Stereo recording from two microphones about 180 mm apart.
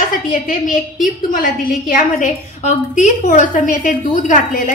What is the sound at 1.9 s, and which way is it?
A woman's voice, 45° left (ahead or behind).